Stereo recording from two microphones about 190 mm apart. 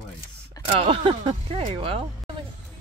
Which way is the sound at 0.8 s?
25° right (ahead or behind).